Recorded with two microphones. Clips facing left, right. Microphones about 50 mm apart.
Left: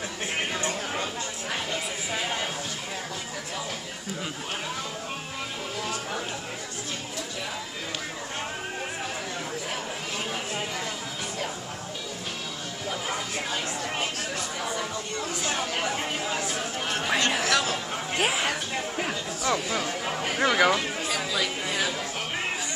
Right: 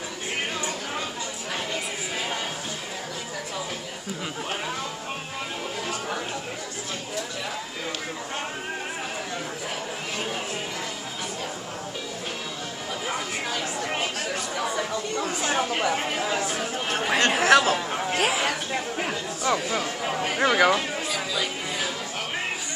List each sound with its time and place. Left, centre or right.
13.8 s chatter: right
15.4 s chatter: right
17.2 s a sound: right
18.1 s a sound: centre
18.7 s chatter: centre
21.3 s chatter: left